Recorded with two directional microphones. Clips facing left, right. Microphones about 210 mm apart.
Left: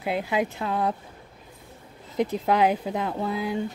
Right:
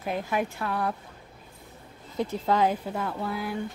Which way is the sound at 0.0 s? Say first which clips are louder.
Left 3 dB; 15° left (ahead or behind).